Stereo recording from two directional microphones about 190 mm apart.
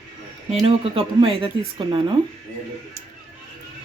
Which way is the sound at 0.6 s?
30° right (ahead or behind).